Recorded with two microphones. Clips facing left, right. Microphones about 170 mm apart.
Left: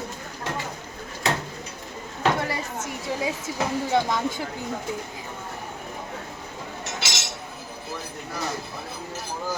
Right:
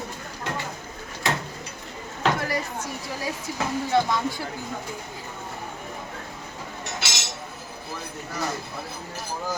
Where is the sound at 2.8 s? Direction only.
20° left (ahead or behind).